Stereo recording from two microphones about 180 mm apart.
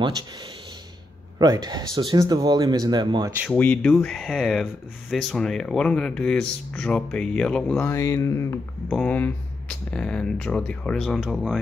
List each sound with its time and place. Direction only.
1.4 s speech: 20° right (ahead or behind)
3.4 s speech: 10° left (ahead or behind)
7.9 s speech: 15° left (ahead or behind); by 11.6 s centre (ahead or behind)